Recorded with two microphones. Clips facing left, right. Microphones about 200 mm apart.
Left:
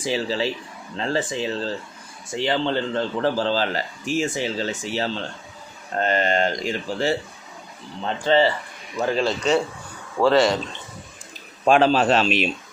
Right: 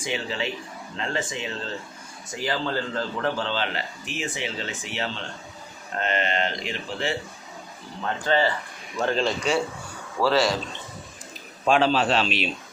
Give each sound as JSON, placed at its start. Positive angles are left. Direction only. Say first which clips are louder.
{"t": 0.0, "sound": "speech", "louder": "left 5 dB", "side_deg": 35}
{"t": 8.0, "sound": "speech", "louder": "left 4 dB", "side_deg": 25}
{"t": 9.0, "sound": "a man's voice", "louder": "left 2 dB", "side_deg": 10}
{"t": 10.2, "sound": "speech", "louder": "left 4 dB", "side_deg": 0}
{"t": 11.6, "sound": "a man's voice", "louder": "left 4 dB", "side_deg": 50}